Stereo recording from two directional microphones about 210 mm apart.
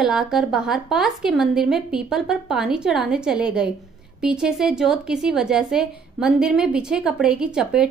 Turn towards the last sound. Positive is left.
turn(degrees=-5)  # may be behind; listen again after turning